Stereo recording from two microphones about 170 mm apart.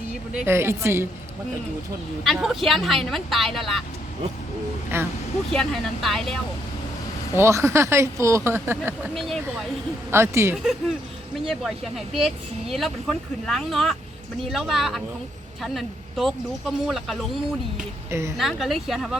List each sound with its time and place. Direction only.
0.4 s speech: 15° right (ahead or behind)
2.2 s speech: centre (ahead or behind)
4.9 s speech: 15° right (ahead or behind)
5.5 s speech: centre (ahead or behind)
7.3 s speech: 15° right (ahead or behind)
9.1 s speech: centre (ahead or behind)
10.1 s speech: 15° right (ahead or behind)
10.5 s speech: centre (ahead or behind)
18.1 s speech: 15° right (ahead or behind)
18.3 s speech: centre (ahead or behind)